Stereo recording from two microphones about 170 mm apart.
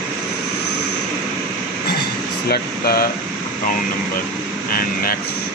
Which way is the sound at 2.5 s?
65° left (ahead or behind).